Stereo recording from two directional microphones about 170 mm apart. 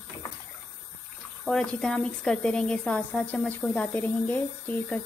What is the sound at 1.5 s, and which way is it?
A woman's voice, 5° left (ahead or behind).